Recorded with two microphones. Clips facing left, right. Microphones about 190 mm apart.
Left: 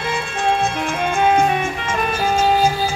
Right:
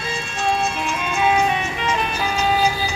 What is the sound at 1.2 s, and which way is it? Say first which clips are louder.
Music: left 2 dB; 50° left (ahead or behind).